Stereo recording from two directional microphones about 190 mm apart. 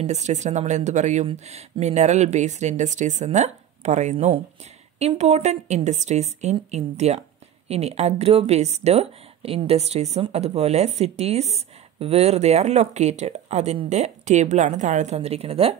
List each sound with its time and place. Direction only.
0.0 s speech: 35° right (ahead or behind)